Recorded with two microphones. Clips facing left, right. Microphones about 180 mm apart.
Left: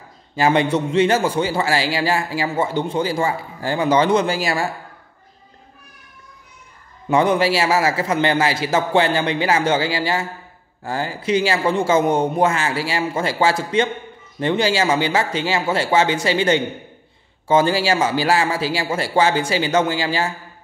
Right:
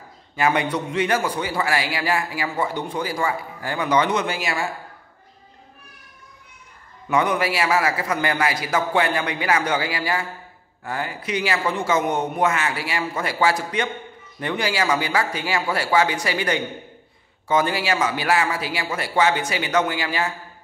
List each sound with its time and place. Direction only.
0.4 s a man's voice: 25° left (ahead or behind)
7.1 s a man's voice: 30° left (ahead or behind)